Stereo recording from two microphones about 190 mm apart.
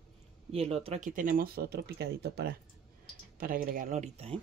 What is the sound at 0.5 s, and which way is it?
Speech, 30° right (ahead or behind).